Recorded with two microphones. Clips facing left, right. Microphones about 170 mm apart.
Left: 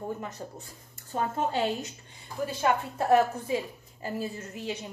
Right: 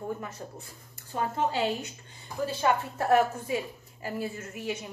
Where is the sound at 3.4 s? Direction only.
25° left (ahead or behind).